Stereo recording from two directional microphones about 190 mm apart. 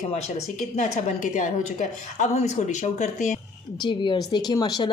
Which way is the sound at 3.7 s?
25° left (ahead or behind).